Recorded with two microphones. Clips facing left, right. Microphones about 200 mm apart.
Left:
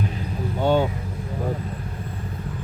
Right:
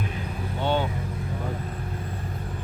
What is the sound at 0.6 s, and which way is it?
Vehicle, 45° left (ahead or behind).